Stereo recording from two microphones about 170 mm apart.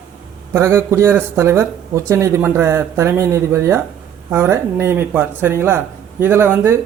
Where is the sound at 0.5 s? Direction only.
15° right (ahead or behind).